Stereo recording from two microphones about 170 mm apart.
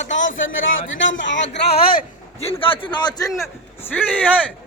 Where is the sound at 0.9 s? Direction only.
90° left; by 2.0 s 60° left (ahead or behind).